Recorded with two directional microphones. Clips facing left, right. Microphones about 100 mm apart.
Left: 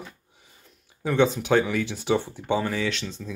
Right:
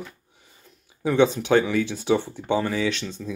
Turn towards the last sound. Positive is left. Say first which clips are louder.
# right 3 dB
turn(degrees=0)  # may be behind; listen again after turning